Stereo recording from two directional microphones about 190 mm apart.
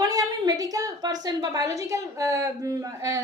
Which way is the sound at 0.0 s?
20° right (ahead or behind).